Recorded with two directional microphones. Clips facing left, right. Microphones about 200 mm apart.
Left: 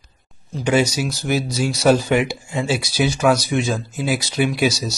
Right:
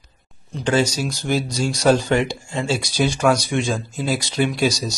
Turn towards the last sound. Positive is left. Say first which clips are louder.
# left 1 dB
turn(degrees=5)  # may be behind; listen again after turning